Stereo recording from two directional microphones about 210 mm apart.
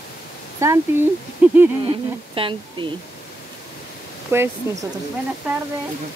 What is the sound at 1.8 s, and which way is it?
Speech, 25° right (ahead or behind).